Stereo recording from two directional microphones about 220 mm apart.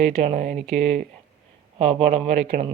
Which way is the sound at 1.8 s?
30° right (ahead or behind).